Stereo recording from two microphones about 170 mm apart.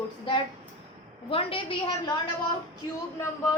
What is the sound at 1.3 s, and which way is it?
Speech, 30° left (ahead or behind).